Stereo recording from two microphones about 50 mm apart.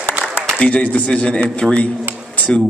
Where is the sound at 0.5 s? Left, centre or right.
Left.